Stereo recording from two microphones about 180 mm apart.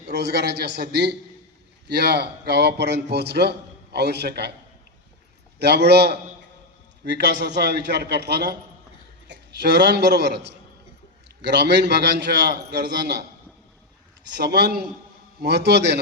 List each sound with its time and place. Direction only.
0.1 s a man's voice: 65° right (ahead or behind)
5.5 s a man's voice: 65° right (ahead or behind)
14.3 s a man's voice: 70° right (ahead or behind)